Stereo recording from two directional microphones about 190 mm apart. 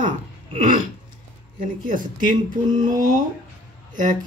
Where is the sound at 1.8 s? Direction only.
45° right (ahead or behind).